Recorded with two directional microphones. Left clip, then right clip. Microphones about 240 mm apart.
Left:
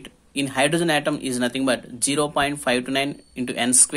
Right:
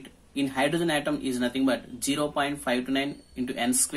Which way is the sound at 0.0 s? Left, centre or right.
Left.